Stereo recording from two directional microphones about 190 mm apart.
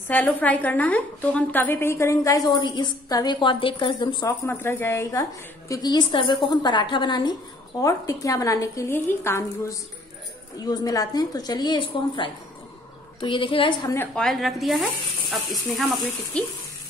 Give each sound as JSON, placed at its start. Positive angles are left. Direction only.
{"t": 0.1, "sound": "a woman's voice", "side_deg": 10}
{"t": 4.5, "sound": "a woman's voice", "side_deg": 10}
{"t": 13.9, "sound": "speech", "side_deg": 5}